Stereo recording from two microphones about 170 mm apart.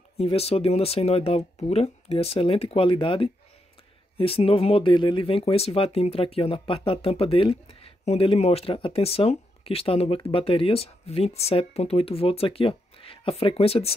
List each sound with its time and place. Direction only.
0.2 s speech: 35° left (ahead or behind)